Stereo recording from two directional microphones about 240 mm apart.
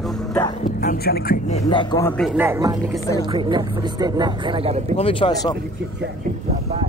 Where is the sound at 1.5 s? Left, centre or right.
Left.